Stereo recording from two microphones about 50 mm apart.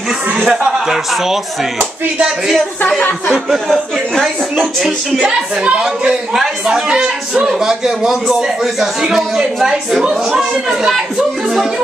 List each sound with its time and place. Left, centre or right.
0.5 s a man's voice: centre
3.3 s speech: centre
4.6 s speech: centre
5.2 s a man's voice: centre